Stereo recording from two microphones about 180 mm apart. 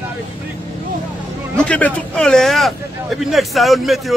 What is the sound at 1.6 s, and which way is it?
A man's voice, 5° left (ahead or behind).